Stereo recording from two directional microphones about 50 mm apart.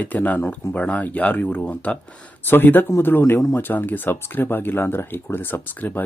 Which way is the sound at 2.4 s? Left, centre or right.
Left.